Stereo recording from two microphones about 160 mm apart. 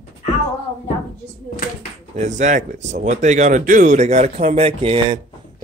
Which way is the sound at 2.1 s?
50° right (ahead or behind).